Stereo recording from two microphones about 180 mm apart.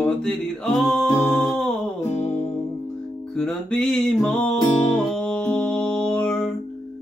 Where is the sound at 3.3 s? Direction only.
5° left (ahead or behind).